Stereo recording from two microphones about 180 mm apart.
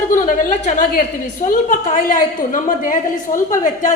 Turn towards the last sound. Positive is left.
turn(degrees=45)  # may be behind; listen again after turning